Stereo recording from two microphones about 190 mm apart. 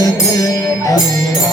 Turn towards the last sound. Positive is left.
turn(degrees=20)  # may be behind; listen again after turning